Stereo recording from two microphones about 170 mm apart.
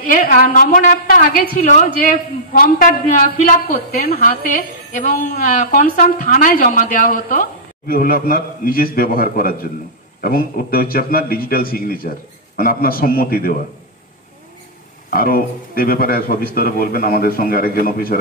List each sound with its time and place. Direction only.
0.0 s a man's voice: 55° left (ahead or behind)
15.0 s a man's voice: 60° left (ahead or behind)